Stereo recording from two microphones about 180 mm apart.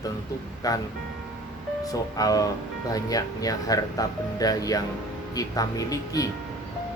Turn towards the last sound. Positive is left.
turn(degrees=20)  # may be behind; listen again after turning